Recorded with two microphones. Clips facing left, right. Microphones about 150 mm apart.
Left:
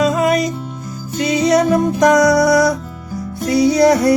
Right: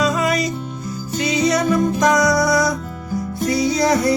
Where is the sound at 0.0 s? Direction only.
55° left (ahead or behind).